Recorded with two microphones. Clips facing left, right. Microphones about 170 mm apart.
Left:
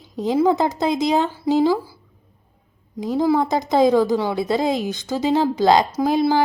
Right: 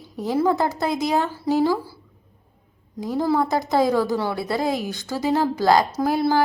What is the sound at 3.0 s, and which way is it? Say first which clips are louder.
A woman's voice: left 3 dB; 15° left (ahead or behind).